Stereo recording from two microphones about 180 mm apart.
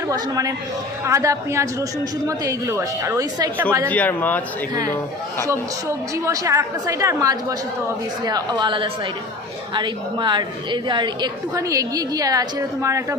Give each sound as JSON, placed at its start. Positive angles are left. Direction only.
{"t": 0.1, "sound": "a woman's voice", "side_deg": -20}
{"t": 3.8, "sound": "speech", "side_deg": 10}
{"t": 5.5, "sound": "a woman's voice", "side_deg": -15}